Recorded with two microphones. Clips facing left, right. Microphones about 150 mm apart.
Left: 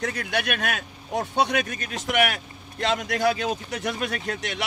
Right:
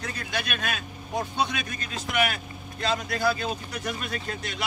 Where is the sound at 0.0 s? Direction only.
70° left (ahead or behind).